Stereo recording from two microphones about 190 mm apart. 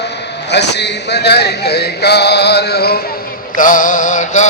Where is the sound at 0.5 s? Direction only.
65° left (ahead or behind).